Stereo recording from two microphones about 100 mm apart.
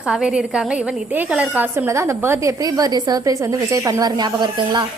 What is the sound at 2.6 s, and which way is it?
A woman's voice, 40° right (ahead or behind).